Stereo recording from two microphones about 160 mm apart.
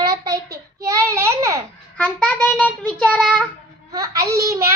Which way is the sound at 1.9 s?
10° left (ahead or behind).